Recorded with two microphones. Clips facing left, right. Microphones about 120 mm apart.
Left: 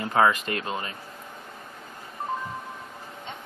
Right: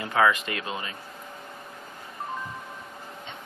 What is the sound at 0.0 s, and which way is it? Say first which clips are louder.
Speech: left 1 dB; 35° left (ahead or behind).